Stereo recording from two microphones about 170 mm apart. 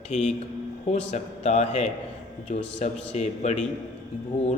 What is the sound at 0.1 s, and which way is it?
Speech, 40° left (ahead or behind).